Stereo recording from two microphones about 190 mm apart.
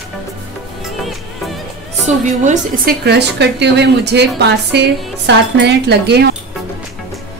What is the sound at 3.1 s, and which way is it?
Speech, 60° right (ahead or behind).